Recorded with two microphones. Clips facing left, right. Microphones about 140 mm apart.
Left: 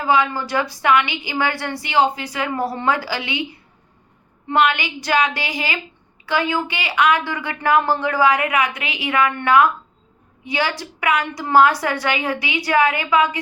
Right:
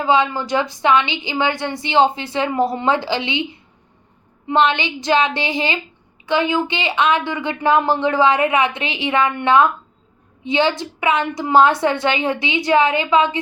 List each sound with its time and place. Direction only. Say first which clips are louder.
0.0 s a woman's voice: right 2 dB; 20° right (ahead or behind)